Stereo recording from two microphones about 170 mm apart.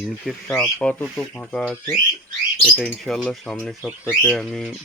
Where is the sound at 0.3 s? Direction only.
5° left (ahead or behind).